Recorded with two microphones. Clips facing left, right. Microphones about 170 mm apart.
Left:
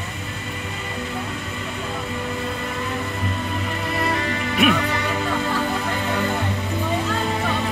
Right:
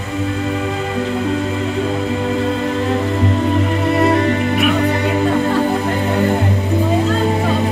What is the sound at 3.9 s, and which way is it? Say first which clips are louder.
Music: right 10 dB; 65° right (ahead or behind).